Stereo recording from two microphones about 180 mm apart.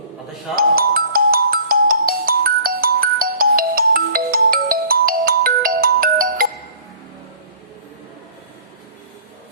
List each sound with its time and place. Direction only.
0.5 s ringtone: 55° right (ahead or behind)